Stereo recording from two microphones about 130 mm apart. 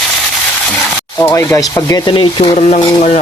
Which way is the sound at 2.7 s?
70° left (ahead or behind).